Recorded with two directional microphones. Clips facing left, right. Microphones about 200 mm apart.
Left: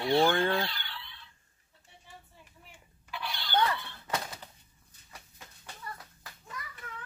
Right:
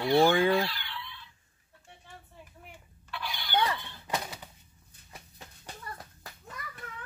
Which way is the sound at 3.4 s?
15° right (ahead or behind).